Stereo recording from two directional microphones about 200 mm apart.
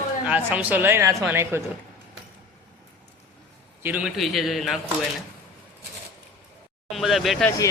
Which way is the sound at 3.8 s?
5° right (ahead or behind).